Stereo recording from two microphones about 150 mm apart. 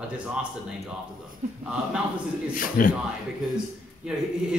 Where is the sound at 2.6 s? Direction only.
65° left (ahead or behind).